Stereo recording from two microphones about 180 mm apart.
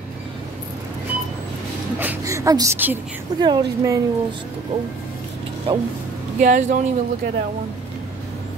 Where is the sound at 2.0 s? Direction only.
15° right (ahead or behind).